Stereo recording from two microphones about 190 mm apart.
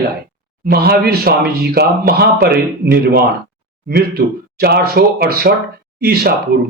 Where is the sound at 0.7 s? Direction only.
55° right (ahead or behind).